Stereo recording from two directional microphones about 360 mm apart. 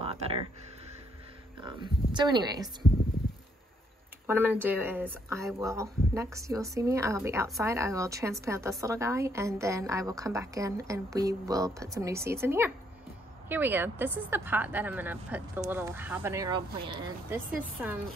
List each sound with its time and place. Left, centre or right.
0.0 s a sound: centre
1.6 s speech: centre
4.3 s speech: centre